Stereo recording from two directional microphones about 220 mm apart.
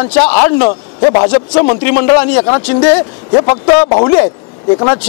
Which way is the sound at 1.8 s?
15° left (ahead or behind).